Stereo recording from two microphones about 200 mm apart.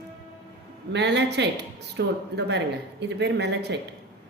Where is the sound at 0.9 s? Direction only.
60° right (ahead or behind).